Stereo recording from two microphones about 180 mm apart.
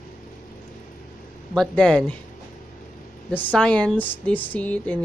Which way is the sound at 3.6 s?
5° left (ahead or behind).